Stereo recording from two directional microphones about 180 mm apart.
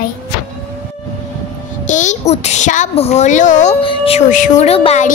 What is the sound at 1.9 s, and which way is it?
A woman's voice, 40° left (ahead or behind).